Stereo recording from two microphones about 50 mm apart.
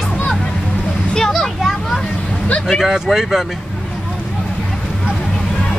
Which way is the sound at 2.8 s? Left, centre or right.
Centre.